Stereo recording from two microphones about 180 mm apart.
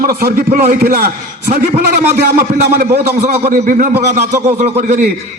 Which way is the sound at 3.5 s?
50° right (ahead or behind).